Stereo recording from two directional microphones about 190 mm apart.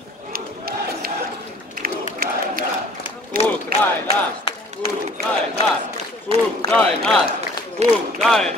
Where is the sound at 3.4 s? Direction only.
30° left (ahead or behind).